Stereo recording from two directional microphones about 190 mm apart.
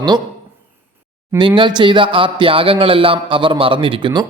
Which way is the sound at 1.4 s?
25° right (ahead or behind).